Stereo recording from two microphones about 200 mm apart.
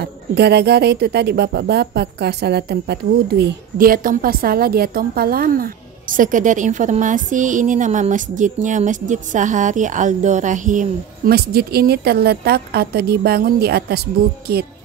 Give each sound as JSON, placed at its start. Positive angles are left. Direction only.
{"t": 0.0, "sound": "speech", "side_deg": -55}